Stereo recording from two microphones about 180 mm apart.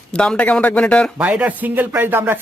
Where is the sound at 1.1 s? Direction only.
10° right (ahead or behind).